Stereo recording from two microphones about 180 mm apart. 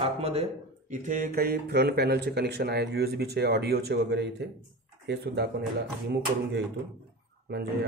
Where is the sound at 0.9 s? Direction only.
45° right (ahead or behind); by 6.7 s 70° right (ahead or behind).